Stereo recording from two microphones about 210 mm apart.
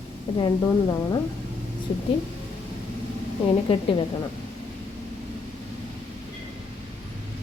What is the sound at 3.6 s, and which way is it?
Speech, 25° left (ahead or behind).